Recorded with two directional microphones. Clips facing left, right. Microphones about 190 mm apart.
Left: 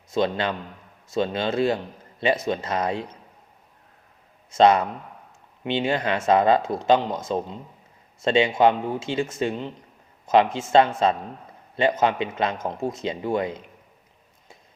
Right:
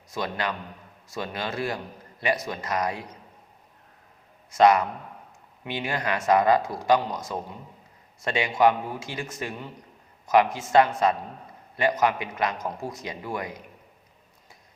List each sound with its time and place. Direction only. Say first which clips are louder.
0.1 s speech: left 6 dB; 25° left (ahead or behind)
4.5 s speech: left 2 dB; 25° left (ahead or behind)